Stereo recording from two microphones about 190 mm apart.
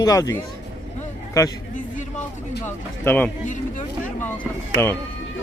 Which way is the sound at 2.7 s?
10° left (ahead or behind).